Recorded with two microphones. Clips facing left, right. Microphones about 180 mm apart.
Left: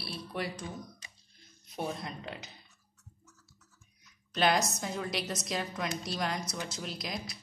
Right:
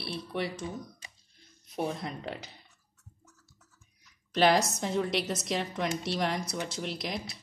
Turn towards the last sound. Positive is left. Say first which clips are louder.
# right 3 dB
turn(degrees=-30)  # may be behind; listen again after turning